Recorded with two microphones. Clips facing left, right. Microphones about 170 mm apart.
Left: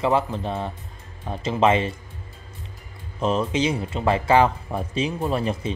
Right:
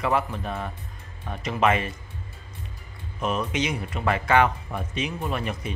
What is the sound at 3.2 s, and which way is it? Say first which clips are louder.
Speech: left 4 dB; 30° left (ahead or behind).